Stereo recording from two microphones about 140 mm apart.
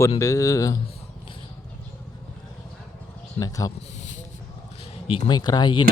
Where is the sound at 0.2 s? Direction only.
25° left (ahead or behind).